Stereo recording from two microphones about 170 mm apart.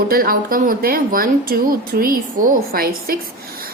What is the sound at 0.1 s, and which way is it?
A woman's voice, 60° right (ahead or behind).